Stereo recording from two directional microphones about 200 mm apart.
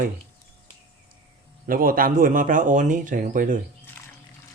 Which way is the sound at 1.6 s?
45° right (ahead or behind).